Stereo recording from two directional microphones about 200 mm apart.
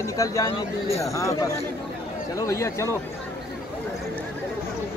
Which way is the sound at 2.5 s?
15° left (ahead or behind).